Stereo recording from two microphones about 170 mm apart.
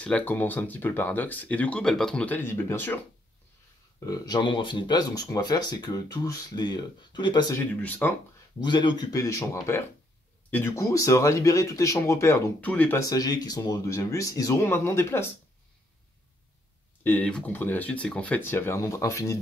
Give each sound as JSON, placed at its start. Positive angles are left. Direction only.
{"t": 0.0, "sound": "speech", "side_deg": 10}
{"t": 4.0, "sound": "speech", "side_deg": 25}
{"t": 7.8, "sound": "speech", "side_deg": 10}
{"t": 8.6, "sound": "speech", "side_deg": 25}
{"t": 13.1, "sound": "speech", "side_deg": 20}
{"t": 17.0, "sound": "speech", "side_deg": 10}